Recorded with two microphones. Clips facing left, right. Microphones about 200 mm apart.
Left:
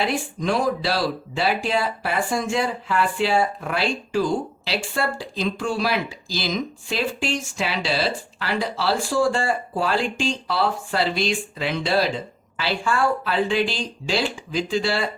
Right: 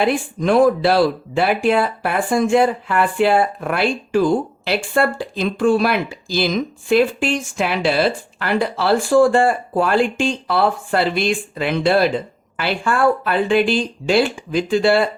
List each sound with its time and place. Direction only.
0.0 s speech: 55° right (ahead or behind)